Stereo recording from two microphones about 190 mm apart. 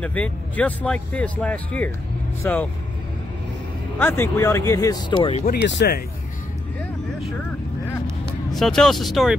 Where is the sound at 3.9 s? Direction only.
10° left (ahead or behind).